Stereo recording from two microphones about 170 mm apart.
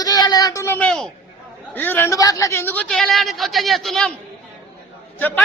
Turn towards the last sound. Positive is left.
turn(degrees=10)  # may be behind; listen again after turning